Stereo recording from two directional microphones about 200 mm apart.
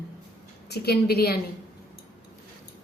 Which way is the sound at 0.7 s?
55° left (ahead or behind).